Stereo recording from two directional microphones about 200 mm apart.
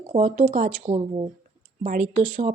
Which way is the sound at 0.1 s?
30° right (ahead or behind).